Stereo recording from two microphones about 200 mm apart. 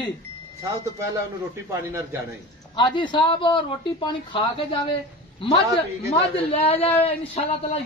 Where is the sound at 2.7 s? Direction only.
25° left (ahead or behind).